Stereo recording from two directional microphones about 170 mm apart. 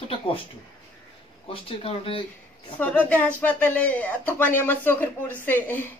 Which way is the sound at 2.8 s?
10° left (ahead or behind).